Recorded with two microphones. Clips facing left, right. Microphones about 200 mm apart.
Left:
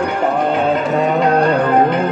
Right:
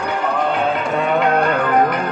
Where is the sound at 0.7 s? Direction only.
40° left (ahead or behind).